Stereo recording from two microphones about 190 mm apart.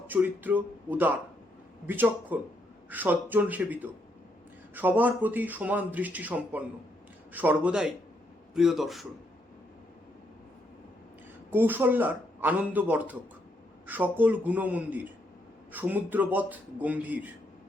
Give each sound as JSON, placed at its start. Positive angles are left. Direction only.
{"t": 0.1, "sound": "speech", "side_deg": -10}
{"t": 11.5, "sound": "speech", "side_deg": -10}